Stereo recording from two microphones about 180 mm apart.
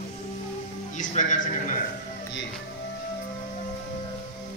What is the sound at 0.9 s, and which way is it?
Speech, 45° left (ahead or behind).